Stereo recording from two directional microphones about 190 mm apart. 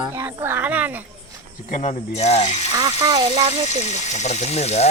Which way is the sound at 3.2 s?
30° right (ahead or behind).